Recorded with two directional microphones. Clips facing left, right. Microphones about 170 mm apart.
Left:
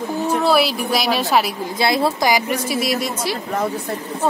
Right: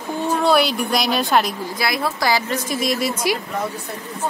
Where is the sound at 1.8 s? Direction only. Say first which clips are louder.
Left 6 dB; 25° left (ahead or behind).